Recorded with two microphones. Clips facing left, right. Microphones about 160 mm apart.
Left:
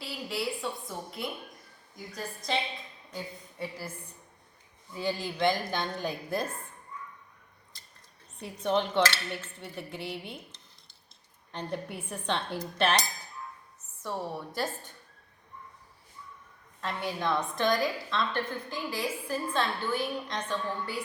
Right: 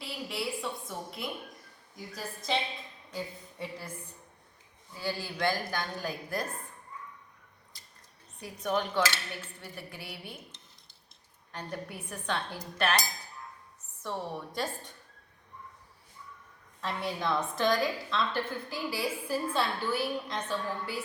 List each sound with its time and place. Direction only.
0.0 s a woman's voice: centre (ahead or behind)
4.9 s a woman's voice: 20° left (ahead or behind)
8.4 s a woman's voice: 25° left (ahead or behind)
11.5 s a woman's voice: 25° left (ahead or behind)
14.0 s a woman's voice: 5° left (ahead or behind)
16.8 s a woman's voice: centre (ahead or behind)